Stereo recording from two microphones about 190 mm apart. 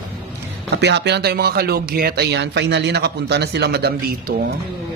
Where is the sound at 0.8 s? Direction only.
65° right (ahead or behind).